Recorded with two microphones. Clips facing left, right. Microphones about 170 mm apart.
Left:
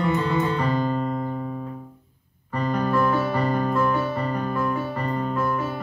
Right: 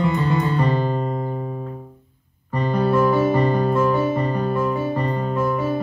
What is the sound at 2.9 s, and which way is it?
Music, 20° right (ahead or behind).